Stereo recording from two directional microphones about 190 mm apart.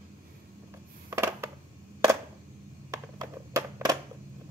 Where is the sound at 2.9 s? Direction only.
15° right (ahead or behind).